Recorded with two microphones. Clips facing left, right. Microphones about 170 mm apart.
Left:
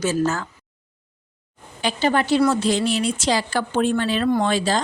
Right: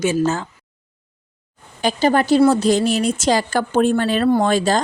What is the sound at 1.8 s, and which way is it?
A woman's voice, 45° right (ahead or behind).